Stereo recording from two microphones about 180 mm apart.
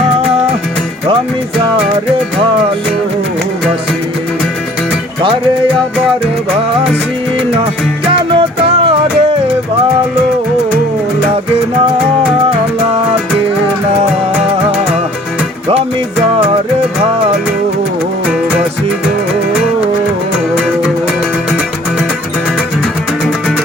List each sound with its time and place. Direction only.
8.3 s music: 30° right (ahead or behind)